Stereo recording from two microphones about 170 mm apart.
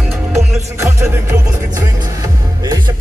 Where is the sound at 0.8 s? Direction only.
15° right (ahead or behind).